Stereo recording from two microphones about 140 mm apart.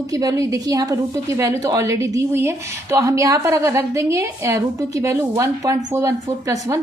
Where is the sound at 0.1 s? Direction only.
25° right (ahead or behind).